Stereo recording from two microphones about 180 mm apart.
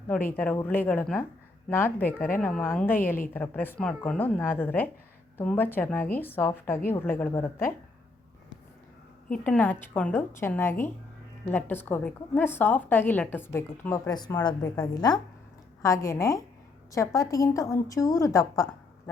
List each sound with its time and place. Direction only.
0.3 s a woman's voice: 10° left (ahead or behind)
3.0 s a woman's voice: 50° left (ahead or behind)
3.3 s a woman's voice: 10° left (ahead or behind)
9.3 s a woman's voice: 10° left (ahead or behind)